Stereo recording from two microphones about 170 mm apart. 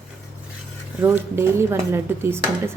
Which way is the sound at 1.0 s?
10° right (ahead or behind).